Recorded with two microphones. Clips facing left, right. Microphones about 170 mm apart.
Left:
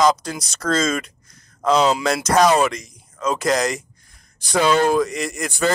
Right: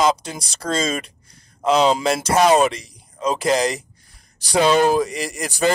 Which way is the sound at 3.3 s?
30° right (ahead or behind).